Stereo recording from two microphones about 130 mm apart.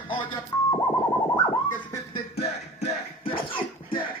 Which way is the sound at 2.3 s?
50° left (ahead or behind).